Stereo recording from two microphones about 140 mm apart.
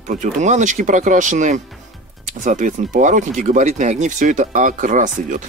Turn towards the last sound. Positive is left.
turn(degrees=-65)  # may be behind; listen again after turning